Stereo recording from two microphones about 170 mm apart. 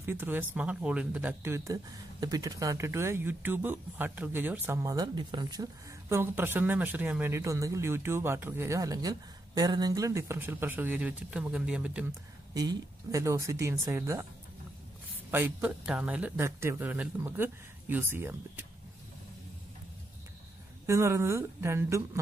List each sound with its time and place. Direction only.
0.0 s speech: 10° right (ahead or behind)
12.5 s speech: 20° right (ahead or behind)
15.3 s speech: 10° right (ahead or behind)
20.8 s speech: 15° right (ahead or behind)